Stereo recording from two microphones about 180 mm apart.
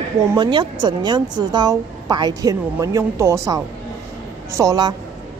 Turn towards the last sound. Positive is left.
turn(degrees=-20)  # may be behind; listen again after turning